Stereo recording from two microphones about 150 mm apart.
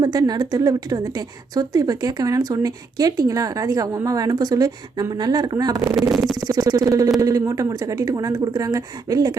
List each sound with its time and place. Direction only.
0.0 s a woman's voice: 25° right (ahead or behind)
6.0 s speech: centre (ahead or behind)
6.4 s a woman's voice: 25° right (ahead or behind)